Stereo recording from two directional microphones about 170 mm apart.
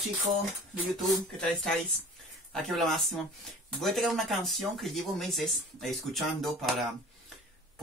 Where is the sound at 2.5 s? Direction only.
Centre (ahead or behind).